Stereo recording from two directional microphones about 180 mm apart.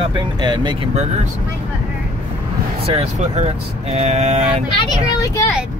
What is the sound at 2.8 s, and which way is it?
Speech, 35° right (ahead or behind).